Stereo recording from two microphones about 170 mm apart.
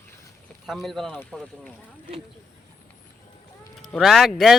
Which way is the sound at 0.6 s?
Centre (ahead or behind).